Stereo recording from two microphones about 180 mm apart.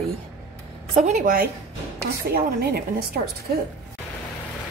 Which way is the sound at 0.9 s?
45° right (ahead or behind).